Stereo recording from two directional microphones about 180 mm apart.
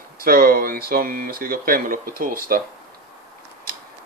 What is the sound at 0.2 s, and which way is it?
Speech, 55° right (ahead or behind).